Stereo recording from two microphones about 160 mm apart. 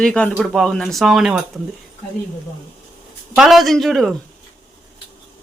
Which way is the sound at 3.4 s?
Centre (ahead or behind).